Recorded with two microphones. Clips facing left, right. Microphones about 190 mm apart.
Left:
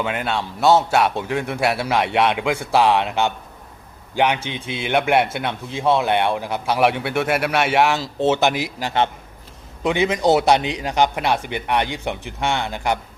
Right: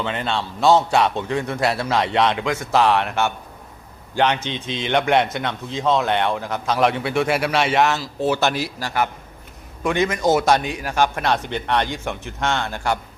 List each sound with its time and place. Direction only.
0.0 s a man's voice: 10° left (ahead or behind)